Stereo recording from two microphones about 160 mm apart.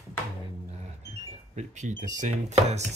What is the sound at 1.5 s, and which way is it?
Speech, 45° right (ahead or behind).